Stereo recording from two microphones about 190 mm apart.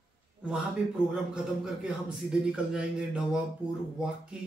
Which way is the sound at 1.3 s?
5° right (ahead or behind).